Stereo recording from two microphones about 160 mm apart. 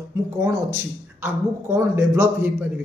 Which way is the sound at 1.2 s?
15° right (ahead or behind).